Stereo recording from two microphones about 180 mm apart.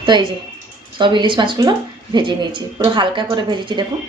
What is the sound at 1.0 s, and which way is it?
Speech, 25° right (ahead or behind).